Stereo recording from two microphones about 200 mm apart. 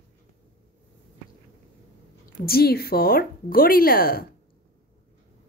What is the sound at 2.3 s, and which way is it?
Speech, 50° left (ahead or behind).